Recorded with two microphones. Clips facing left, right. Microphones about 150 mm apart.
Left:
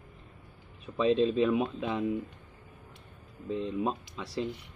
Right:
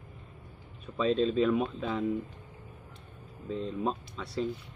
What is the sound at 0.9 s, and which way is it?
Speech, 15° left (ahead or behind).